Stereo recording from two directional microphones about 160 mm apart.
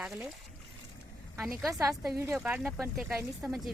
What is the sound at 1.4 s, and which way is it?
Speech, 15° right (ahead or behind).